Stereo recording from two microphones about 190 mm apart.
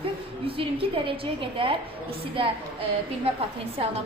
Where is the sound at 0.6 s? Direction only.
30° right (ahead or behind).